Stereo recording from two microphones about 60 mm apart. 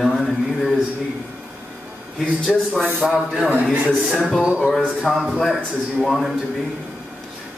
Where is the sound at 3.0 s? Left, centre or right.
Centre.